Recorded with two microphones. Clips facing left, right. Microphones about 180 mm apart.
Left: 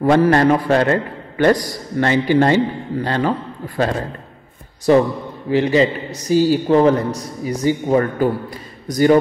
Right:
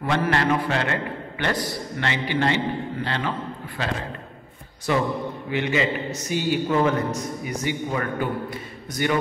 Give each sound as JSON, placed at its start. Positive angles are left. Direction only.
{"t": 0.0, "sound": "a man's voice", "side_deg": 40}